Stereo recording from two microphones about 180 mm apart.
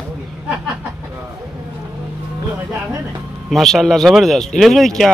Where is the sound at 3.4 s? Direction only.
Centre (ahead or behind).